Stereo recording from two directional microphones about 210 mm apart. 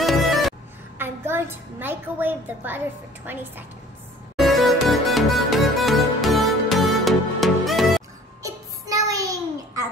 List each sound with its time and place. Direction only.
0.0 s music: centre (ahead or behind)
0.9 s a woman's voice: 10° right (ahead or behind)
4.4 s music: centre (ahead or behind)
8.4 s music: 15° right (ahead or behind)